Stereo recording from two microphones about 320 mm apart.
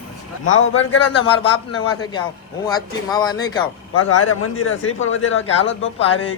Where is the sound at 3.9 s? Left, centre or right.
Left.